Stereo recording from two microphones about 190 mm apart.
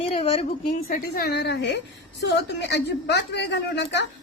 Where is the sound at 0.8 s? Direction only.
50° left (ahead or behind); by 4.0 s 65° left (ahead or behind).